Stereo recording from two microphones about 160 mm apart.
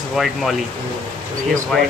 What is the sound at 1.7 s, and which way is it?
Speech, centre (ahead or behind).